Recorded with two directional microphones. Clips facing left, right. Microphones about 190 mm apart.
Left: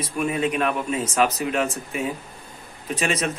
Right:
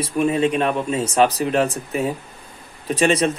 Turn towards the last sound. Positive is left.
turn(degrees=-30)  # may be behind; listen again after turning